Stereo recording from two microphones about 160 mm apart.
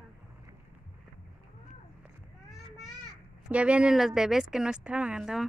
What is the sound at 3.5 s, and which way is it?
Speech, 5° right (ahead or behind).